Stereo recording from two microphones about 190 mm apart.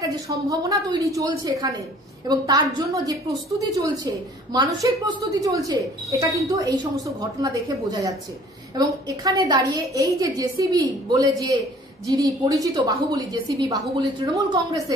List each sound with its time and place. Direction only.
0.0 s a woman's voice: 20° right (ahead or behind)